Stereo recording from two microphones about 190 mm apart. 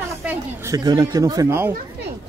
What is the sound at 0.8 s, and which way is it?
Speech, 20° right (ahead or behind).